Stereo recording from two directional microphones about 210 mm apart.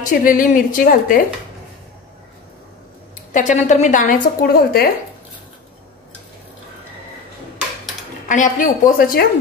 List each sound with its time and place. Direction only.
0.0 s a woman's voice: 40° left (ahead or behind)
3.3 s a woman's voice: 35° left (ahead or behind)
8.3 s a woman's voice: 40° left (ahead or behind)